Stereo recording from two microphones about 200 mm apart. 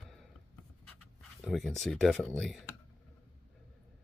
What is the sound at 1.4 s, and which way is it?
Speech, centre (ahead or behind).